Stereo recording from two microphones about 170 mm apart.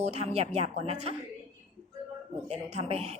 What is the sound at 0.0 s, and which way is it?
A woman's voice, 40° right (ahead or behind).